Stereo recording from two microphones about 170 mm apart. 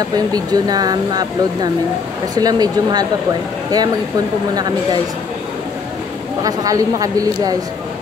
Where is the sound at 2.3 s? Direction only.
25° right (ahead or behind).